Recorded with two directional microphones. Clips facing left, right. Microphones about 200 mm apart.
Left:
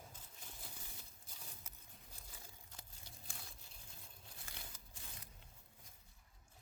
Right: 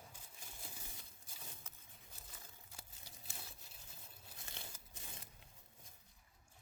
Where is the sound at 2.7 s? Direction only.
10° right (ahead or behind).